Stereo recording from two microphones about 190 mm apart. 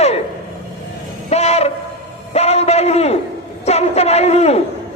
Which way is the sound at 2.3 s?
35° left (ahead or behind).